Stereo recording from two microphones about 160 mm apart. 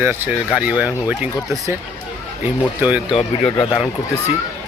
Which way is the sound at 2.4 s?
10° right (ahead or behind).